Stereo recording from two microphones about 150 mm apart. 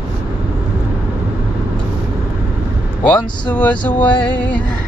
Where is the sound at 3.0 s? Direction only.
10° left (ahead or behind).